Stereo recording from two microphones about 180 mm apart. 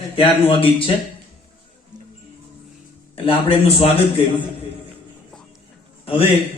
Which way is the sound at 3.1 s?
30° left (ahead or behind).